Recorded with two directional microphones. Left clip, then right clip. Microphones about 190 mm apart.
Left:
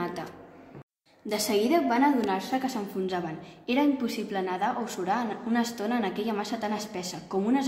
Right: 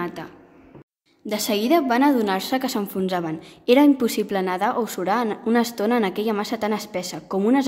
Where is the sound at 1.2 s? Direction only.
35° right (ahead or behind).